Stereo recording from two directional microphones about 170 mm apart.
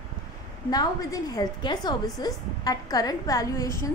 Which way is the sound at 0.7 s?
20° left (ahead or behind).